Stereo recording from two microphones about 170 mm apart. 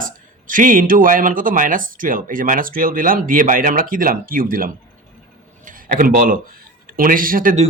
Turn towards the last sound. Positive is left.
turn(degrees=-55)  # may be behind; listen again after turning